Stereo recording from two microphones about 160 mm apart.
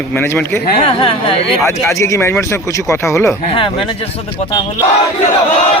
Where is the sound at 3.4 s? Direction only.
35° left (ahead or behind).